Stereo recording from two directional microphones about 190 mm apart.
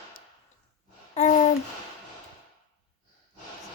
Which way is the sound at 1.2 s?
35° left (ahead or behind).